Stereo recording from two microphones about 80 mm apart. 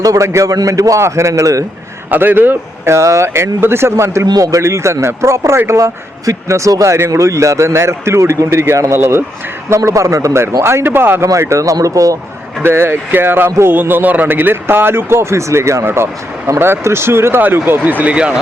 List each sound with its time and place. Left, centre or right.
0.0 s a man's voice: right
2.0 s a man's voice: right
11.3 s a man's voice: right
12.6 s a man's voice: right; by 18.3 s centre